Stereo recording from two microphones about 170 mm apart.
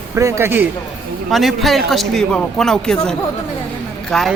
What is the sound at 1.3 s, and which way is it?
A man's voice, centre (ahead or behind).